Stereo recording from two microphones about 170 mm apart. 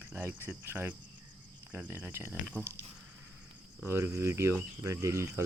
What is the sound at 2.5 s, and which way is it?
Speech, 10° left (ahead or behind).